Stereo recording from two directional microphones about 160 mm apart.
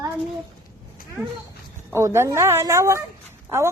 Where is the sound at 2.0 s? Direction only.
15° right (ahead or behind).